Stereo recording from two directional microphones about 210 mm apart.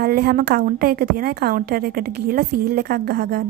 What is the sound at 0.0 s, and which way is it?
A woman's voice, 45° right (ahead or behind).